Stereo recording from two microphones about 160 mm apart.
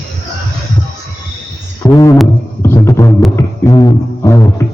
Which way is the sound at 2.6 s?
20° left (ahead or behind).